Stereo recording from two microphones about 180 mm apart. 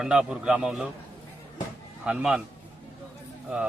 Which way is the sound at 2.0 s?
5° right (ahead or behind).